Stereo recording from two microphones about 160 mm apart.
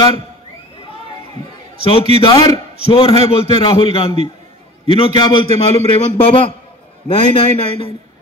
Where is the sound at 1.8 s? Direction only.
35° left (ahead or behind).